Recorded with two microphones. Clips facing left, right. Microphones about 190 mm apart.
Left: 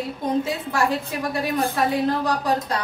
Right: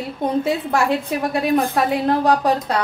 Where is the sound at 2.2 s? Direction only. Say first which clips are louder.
Right 5 dB; 65° right (ahead or behind).